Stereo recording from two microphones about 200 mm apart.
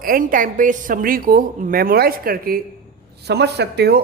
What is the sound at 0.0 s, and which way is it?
A woman's voice, 45° right (ahead or behind).